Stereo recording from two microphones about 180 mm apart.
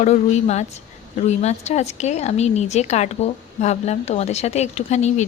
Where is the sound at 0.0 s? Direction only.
40° left (ahead or behind).